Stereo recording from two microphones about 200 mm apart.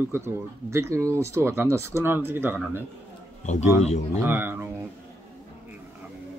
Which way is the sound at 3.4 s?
35° left (ahead or behind).